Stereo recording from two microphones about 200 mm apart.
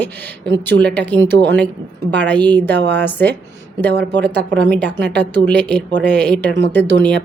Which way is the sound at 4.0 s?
60° right (ahead or behind).